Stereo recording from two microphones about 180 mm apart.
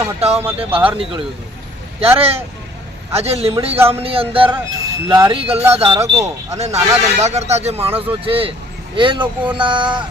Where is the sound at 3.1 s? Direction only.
35° right (ahead or behind).